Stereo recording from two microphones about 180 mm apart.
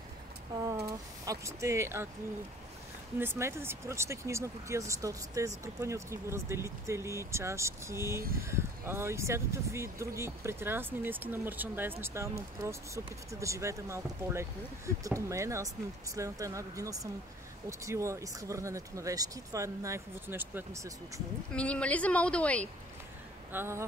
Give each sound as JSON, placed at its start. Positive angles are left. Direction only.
{"t": 1.2, "sound": "speech", "side_deg": -15}
{"t": 3.2, "sound": "speech", "side_deg": -15}
{"t": 21.5, "sound": "a woman's voice", "side_deg": 5}
{"t": 23.5, "sound": "speech", "side_deg": -15}